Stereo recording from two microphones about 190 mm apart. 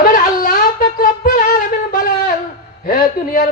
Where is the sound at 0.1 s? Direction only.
45° left (ahead or behind).